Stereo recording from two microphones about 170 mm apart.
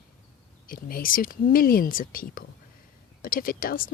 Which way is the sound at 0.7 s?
55° left (ahead or behind).